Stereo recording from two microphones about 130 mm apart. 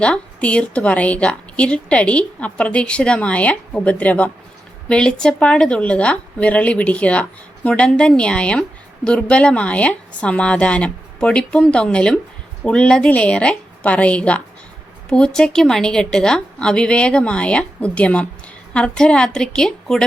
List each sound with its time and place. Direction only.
0.0 s a woman's voice: 10° left (ahead or behind)